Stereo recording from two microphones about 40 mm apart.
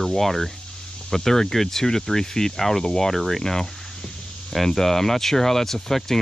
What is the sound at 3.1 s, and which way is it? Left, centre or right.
Speech, centre.